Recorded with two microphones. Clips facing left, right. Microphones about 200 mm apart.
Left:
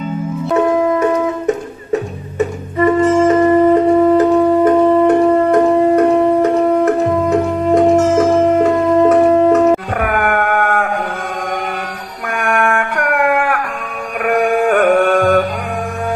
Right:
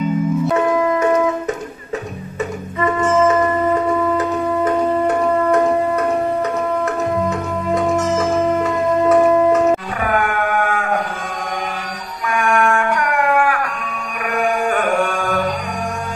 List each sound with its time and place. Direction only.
2.3 s music: 35° left (ahead or behind); by 8.2 s 55° left (ahead or behind)
9.5 s music: 60° left (ahead or behind)
12.3 s a sound: 60° left (ahead or behind)